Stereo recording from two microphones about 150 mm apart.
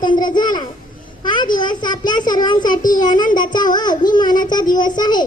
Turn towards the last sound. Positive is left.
turn(degrees=30)  # may be behind; listen again after turning